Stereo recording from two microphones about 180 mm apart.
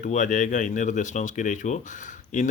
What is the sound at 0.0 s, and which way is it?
Speech, 45° left (ahead or behind).